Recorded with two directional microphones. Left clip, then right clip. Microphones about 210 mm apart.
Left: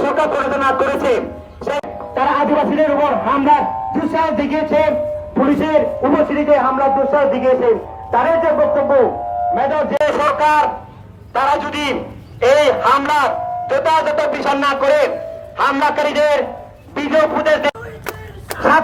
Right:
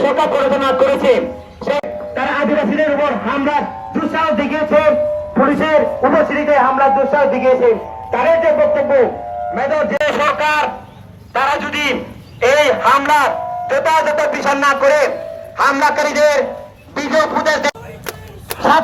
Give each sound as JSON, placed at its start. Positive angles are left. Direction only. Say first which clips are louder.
{"t": 0.0, "sound": "a sound", "louder": "right 2 dB", "side_deg": 50}
{"t": 2.1, "sound": "music", "louder": "left 2 dB", "side_deg": 10}
{"t": 5.3, "sound": "a man's voice", "louder": "right 1 dB", "side_deg": 10}
{"t": 8.1, "sound": "a man's voice", "louder": "right 1 dB", "side_deg": -25}
{"t": 10.0, "sound": "a man's voice", "louder": "left 1 dB", "side_deg": 55}